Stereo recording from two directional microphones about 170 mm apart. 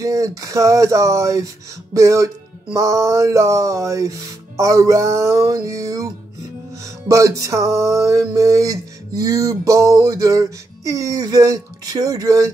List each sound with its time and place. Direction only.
0.0 s music: 20° right (ahead or behind)
7.1 s music: 20° right (ahead or behind)